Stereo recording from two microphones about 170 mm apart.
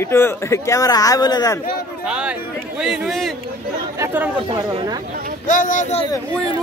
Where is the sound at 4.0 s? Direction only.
15° right (ahead or behind).